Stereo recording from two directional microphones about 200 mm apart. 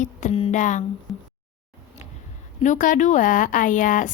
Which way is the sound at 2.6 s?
40° left (ahead or behind).